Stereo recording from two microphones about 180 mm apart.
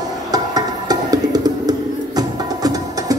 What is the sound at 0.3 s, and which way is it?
Music, 20° right (ahead or behind).